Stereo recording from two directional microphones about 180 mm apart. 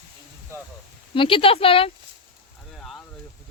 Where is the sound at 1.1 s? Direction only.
30° left (ahead or behind).